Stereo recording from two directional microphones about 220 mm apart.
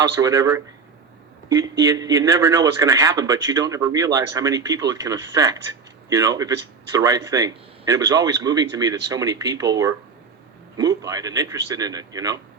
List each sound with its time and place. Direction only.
0.0 s a man's voice: 15° right (ahead or behind)